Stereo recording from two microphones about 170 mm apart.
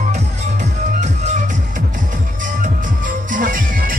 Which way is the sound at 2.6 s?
50° right (ahead or behind).